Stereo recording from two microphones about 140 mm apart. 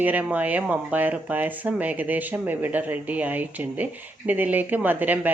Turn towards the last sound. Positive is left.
turn(degrees=-10)  # may be behind; listen again after turning